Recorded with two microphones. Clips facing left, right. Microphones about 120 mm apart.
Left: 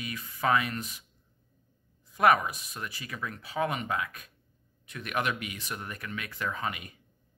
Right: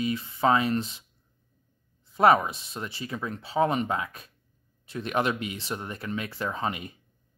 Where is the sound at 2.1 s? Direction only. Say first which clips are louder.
Right 3 dB; 30° right (ahead or behind).